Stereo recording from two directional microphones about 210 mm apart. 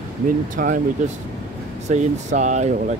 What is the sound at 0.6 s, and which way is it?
Speech, 40° right (ahead or behind).